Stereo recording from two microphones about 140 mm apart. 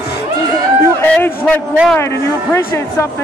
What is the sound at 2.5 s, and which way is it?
Speech, 20° left (ahead or behind).